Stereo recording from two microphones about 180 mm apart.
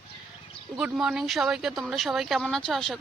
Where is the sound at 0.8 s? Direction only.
5° right (ahead or behind).